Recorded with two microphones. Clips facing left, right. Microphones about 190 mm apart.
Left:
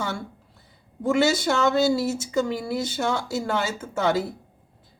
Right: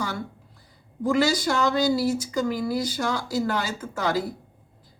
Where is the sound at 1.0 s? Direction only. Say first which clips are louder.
Left 1 dB; 25° left (ahead or behind).